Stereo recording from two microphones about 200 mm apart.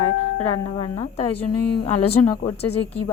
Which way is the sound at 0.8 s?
30° left (ahead or behind).